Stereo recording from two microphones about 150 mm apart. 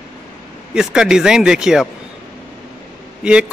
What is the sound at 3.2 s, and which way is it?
Speech, 5° right (ahead or behind).